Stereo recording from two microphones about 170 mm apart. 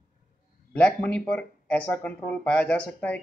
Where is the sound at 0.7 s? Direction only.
5° left (ahead or behind).